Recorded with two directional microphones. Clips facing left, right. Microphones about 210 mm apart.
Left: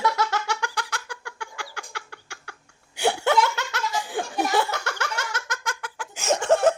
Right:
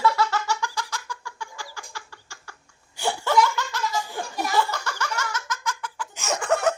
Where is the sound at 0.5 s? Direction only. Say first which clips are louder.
Right 1 dB; 65° left (ahead or behind).